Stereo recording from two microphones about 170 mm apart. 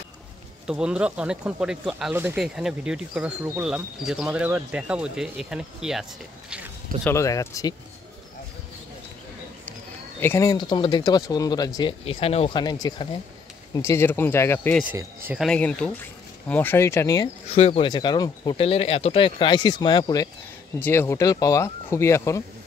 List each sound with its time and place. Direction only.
0.7 s speech: 5° right (ahead or behind)
7.1 s speech: 20° left (ahead or behind)
10.2 s speech: 15° left (ahead or behind)
12.0 s speech: 35° left (ahead or behind); by 14.9 s 10° left (ahead or behind)
14.9 s speech: 10° right (ahead or behind)
15.3 s speech: 5° left (ahead or behind); by 17.3 s 20° left (ahead or behind)
17.5 s speech: 35° left (ahead or behind)
20.8 s speech: 15° left (ahead or behind)